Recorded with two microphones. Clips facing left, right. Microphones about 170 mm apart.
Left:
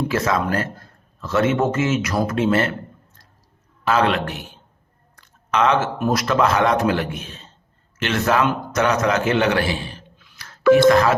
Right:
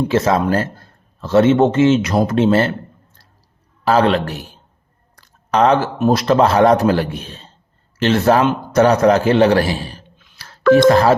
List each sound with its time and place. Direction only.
0.1 s a man's voice: 30° right (ahead or behind)
3.8 s a man's voice: 35° right (ahead or behind)
5.1 s a sound: 35° right (ahead or behind)
6.0 s a man's voice: 30° right (ahead or behind)
10.2 s telephone dialing: 30° right (ahead or behind)
10.6 s speech: 5° left (ahead or behind)
10.8 s a man's voice: 30° right (ahead or behind)